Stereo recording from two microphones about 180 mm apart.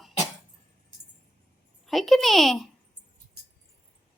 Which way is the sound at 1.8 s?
Centre (ahead or behind).